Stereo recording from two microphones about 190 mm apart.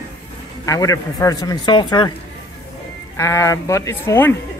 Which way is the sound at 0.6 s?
20° left (ahead or behind).